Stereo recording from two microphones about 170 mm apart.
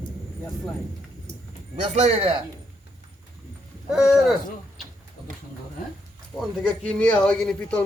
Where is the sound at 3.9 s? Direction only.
5° right (ahead or behind).